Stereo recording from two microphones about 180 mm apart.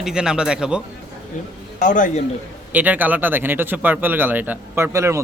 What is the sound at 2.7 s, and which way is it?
Speech, 10° right (ahead or behind).